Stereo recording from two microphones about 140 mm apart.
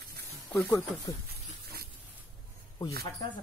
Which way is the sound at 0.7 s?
20° left (ahead or behind).